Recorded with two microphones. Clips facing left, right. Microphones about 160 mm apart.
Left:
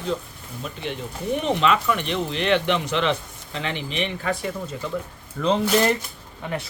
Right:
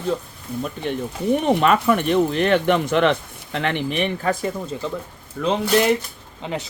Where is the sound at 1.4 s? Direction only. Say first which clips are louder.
Right 2 dB; 55° right (ahead or behind).